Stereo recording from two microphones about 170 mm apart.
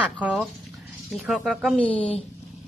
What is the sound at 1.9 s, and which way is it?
Speech, 30° left (ahead or behind).